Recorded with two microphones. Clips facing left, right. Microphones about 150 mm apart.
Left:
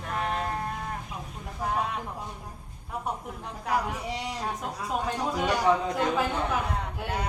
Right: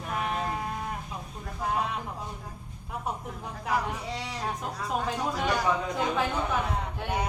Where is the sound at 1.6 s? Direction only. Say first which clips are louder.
Even; centre (ahead or behind).